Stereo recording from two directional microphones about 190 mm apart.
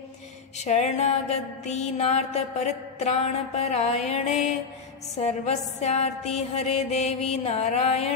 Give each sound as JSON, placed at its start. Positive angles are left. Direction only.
{"t": 0.6, "sound": "music", "side_deg": 40}